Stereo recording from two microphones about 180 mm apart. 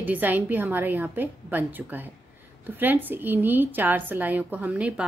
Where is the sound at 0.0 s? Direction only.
10° right (ahead or behind).